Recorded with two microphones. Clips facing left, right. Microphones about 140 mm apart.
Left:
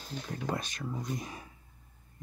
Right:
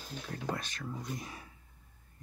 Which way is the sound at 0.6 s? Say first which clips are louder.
Left 3 dB; 15° left (ahead or behind).